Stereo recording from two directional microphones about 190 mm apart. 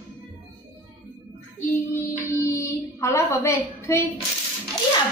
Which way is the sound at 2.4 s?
15° left (ahead or behind).